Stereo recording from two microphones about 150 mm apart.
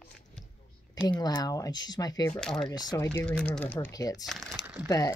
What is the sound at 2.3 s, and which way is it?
Speech, 5° left (ahead or behind).